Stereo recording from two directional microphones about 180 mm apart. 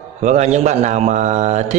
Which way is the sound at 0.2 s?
40° right (ahead or behind).